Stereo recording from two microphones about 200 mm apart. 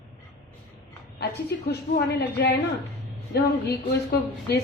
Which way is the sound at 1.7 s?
55° left (ahead or behind).